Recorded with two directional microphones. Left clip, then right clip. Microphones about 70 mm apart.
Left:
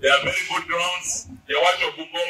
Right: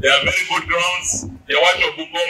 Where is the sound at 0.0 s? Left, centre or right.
Right.